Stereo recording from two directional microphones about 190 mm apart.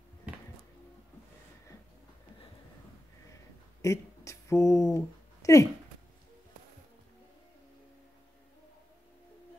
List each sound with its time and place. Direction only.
3.8 s speech: 15° left (ahead or behind)